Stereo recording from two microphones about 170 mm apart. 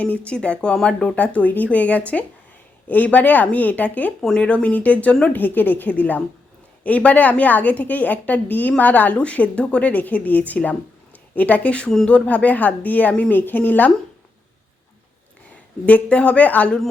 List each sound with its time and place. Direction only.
0.3 s a woman's voice: 5° left (ahead or behind)
15.9 s a woman's voice: 5° left (ahead or behind)